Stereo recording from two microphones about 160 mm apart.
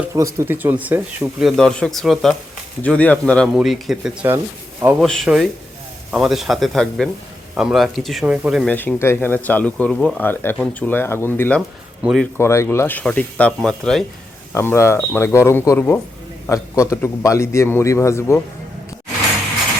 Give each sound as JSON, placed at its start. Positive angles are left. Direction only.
{"t": 0.1, "sound": "speech", "side_deg": -15}
{"t": 8.6, "sound": "speech", "side_deg": 10}
{"t": 12.4, "sound": "speech", "side_deg": 15}
{"t": 14.5, "sound": "speech", "side_deg": 15}